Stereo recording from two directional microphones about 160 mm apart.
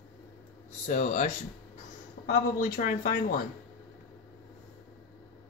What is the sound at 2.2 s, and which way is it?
Speech, 60° left (ahead or behind).